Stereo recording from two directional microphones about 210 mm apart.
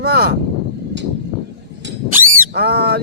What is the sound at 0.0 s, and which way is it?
Speech, 50° right (ahead or behind).